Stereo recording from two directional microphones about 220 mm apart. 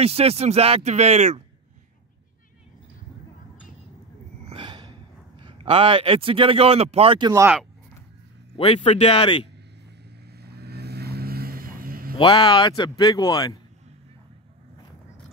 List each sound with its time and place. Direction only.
0.0 s speech: 25° right (ahead or behind)
4.5 s gasp: 20° right (ahead or behind)
5.4 s speech: 25° right (ahead or behind)
8.5 s speech: 25° left (ahead or behind)
10.2 s vehicle: 45° right (ahead or behind)
12.2 s speech: 20° left (ahead or behind)